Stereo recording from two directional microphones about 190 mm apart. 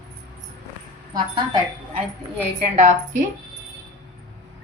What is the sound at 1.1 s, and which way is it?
Speech, 20° right (ahead or behind).